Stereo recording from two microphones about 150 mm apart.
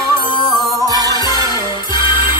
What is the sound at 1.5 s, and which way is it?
Music, 30° left (ahead or behind).